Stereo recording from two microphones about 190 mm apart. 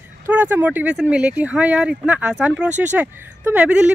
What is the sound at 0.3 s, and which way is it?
Speech, 10° right (ahead or behind).